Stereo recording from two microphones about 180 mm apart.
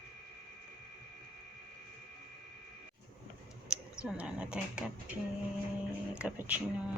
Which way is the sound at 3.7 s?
5° right (ahead or behind).